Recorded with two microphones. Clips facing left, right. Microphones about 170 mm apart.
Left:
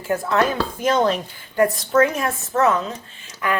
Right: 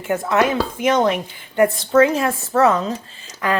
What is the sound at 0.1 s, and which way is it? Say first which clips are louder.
Speech: right 2 dB; 20° right (ahead or behind).